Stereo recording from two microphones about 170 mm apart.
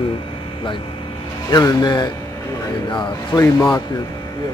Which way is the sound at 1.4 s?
20° left (ahead or behind).